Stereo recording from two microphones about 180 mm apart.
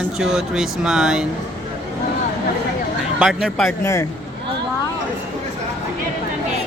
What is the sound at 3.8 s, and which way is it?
Speech, 15° left (ahead or behind).